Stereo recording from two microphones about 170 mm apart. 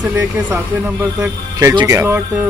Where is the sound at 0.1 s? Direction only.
10° right (ahead or behind).